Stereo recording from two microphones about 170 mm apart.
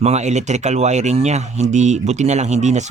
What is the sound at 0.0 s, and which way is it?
Speech, 40° right (ahead or behind).